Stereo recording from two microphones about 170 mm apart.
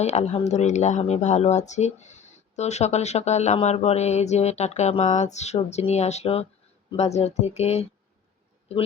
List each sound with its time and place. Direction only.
0.0 s speech: 40° left (ahead or behind)